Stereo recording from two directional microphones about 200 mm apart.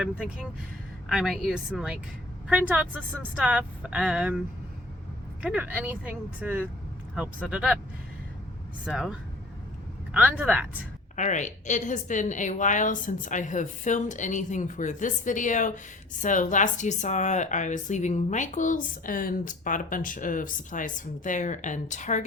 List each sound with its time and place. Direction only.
0.0 s a woman's voice: 5° right (ahead or behind)
5.4 s speech: 5° right (ahead or behind)
8.9 s a woman's voice: 5° right (ahead or behind)
11.2 s a woman's voice: 35° left (ahead or behind)